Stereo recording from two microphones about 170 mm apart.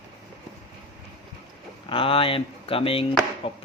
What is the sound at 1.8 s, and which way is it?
Speech, 30° left (ahead or behind).